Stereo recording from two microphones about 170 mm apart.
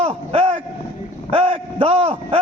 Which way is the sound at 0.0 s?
35° right (ahead or behind).